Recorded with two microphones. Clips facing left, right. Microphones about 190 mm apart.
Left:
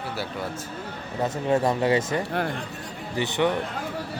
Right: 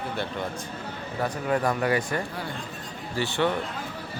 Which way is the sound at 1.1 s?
25° left (ahead or behind).